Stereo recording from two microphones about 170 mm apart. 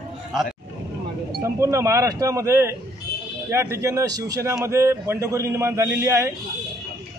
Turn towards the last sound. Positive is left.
turn(degrees=-15)  # may be behind; listen again after turning